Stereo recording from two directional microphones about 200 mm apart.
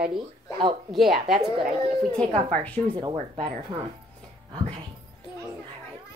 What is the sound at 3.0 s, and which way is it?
Speech, 25° right (ahead or behind).